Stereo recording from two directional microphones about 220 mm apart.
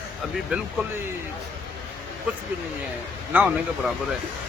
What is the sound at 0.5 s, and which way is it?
Speech, 5° right (ahead or behind).